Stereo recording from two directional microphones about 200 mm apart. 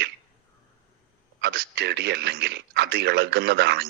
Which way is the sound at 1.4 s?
55° right (ahead or behind).